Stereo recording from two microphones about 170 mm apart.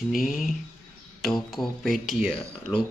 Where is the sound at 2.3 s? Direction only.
30° left (ahead or behind).